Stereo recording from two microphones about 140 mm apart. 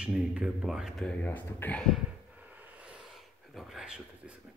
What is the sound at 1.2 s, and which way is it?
Speech, 10° left (ahead or behind).